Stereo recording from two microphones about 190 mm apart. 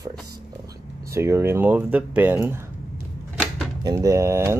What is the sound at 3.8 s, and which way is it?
Speech, 15° right (ahead or behind).